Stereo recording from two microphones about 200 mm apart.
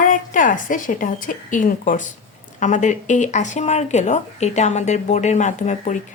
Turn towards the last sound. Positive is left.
turn(degrees=35)  # may be behind; listen again after turning